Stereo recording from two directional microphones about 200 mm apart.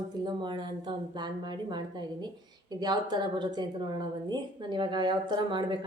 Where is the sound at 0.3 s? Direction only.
25° right (ahead or behind).